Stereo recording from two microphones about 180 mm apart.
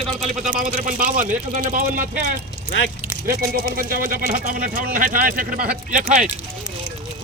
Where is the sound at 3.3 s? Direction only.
55° right (ahead or behind).